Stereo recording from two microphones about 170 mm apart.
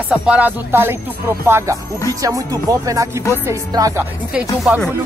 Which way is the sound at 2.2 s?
20° right (ahead or behind).